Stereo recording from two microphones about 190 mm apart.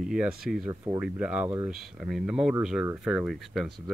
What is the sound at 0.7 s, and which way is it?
Speech, 15° right (ahead or behind).